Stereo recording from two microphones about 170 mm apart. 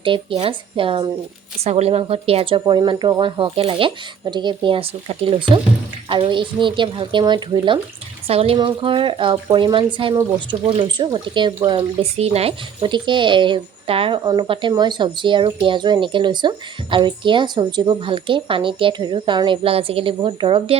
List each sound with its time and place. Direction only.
0.0 s speech: 30° right (ahead or behind)